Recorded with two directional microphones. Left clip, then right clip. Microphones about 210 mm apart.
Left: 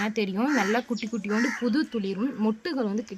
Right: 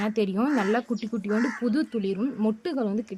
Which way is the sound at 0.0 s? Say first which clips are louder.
Right 1 dB; 30° right (ahead or behind).